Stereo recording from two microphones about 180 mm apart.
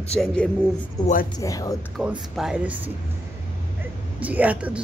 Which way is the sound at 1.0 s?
20° left (ahead or behind).